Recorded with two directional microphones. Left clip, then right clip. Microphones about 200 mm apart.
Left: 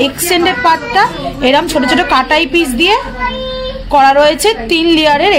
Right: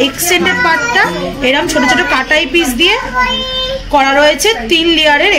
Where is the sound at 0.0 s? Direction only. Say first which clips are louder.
Even; 55° left (ahead or behind).